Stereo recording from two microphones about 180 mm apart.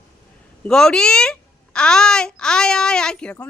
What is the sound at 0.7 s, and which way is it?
A woman's voice, 5° left (ahead or behind).